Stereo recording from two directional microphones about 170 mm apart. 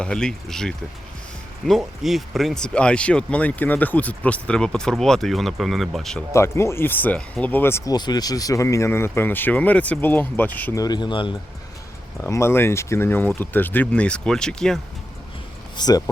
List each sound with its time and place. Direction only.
0.0 s speech: 5° left (ahead or behind)
6.3 s speech: 15° left (ahead or behind)
12.2 s speech: 15° left (ahead or behind)
15.8 s speech: 20° left (ahead or behind)